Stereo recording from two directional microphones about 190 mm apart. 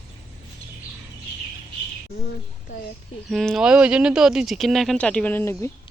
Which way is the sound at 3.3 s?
Centre (ahead or behind).